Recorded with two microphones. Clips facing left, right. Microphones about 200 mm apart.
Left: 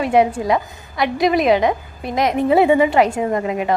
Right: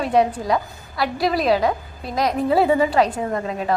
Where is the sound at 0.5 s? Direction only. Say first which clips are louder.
Left 3 dB; 20° left (ahead or behind).